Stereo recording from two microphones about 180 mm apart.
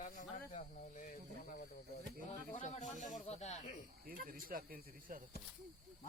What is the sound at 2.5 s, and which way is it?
Snake, 40° left (ahead or behind).